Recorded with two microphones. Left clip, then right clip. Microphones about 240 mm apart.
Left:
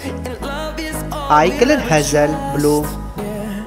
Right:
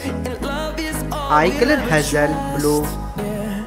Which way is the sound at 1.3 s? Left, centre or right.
Centre.